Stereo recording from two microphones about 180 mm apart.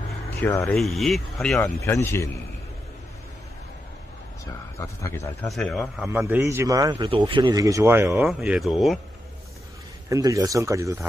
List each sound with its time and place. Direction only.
0.4 s speech: 15° left (ahead or behind)
0.7 s speech: centre (ahead or behind)
1.8 s speech: 15° left (ahead or behind)
4.7 s speech: 15° left (ahead or behind)
5.5 s speech: centre (ahead or behind)
6.0 s a man's voice: 15° right (ahead or behind)
8.3 s speech: centre (ahead or behind)
10.0 s a man's voice: 20° right (ahead or behind)